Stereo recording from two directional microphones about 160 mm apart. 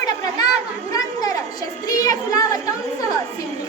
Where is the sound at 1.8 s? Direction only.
25° left (ahead or behind).